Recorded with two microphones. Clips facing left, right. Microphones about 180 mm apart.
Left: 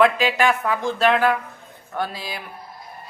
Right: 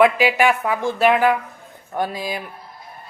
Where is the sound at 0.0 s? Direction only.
10° right (ahead or behind).